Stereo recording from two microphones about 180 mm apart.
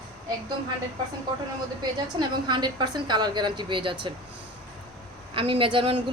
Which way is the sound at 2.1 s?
25° right (ahead or behind).